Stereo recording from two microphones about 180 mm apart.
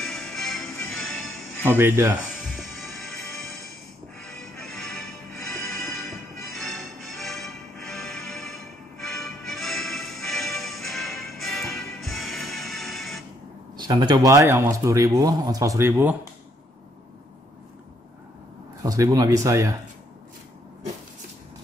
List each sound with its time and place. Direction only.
0.0 s music: centre (ahead or behind)
1.8 s speech: 15° right (ahead or behind)
2.5 s music: centre (ahead or behind)
13.7 s speech: 25° right (ahead or behind)
18.8 s speech: 20° right (ahead or behind)